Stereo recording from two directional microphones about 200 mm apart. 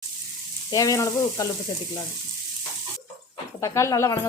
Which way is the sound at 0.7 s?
15° left (ahead or behind).